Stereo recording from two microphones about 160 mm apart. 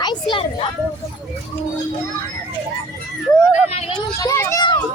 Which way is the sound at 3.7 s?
40° left (ahead or behind).